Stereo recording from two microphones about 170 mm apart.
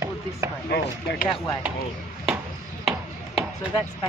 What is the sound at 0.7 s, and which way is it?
Speech, 65° left (ahead or behind).